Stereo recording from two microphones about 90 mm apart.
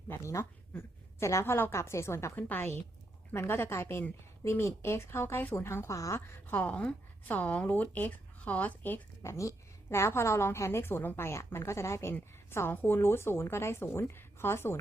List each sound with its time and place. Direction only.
0.1 s a woman's voice: 35° left (ahead or behind)
9.2 s a woman's voice: 35° left (ahead or behind)